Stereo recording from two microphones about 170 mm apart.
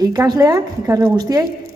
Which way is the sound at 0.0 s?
25° right (ahead or behind).